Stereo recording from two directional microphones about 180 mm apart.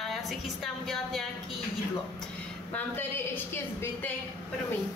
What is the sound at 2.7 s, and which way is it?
A woman's voice, 10° left (ahead or behind).